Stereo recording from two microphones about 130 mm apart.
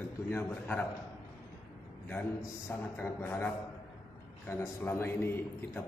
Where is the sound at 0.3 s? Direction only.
15° left (ahead or behind).